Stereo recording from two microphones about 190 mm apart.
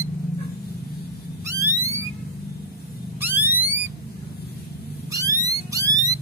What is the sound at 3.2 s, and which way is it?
Music, 10° right (ahead or behind).